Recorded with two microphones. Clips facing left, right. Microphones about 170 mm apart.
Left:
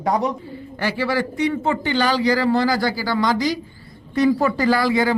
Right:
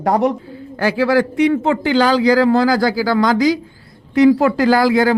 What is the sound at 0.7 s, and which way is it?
Speech, 90° right.